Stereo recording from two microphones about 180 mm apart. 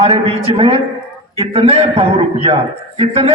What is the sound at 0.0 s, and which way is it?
A man's voice, 35° right (ahead or behind).